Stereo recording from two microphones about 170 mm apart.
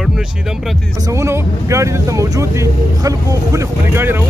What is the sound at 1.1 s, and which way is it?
Speech, 15° right (ahead or behind).